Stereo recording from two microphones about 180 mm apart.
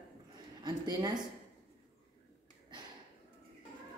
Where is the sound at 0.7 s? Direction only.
20° right (ahead or behind).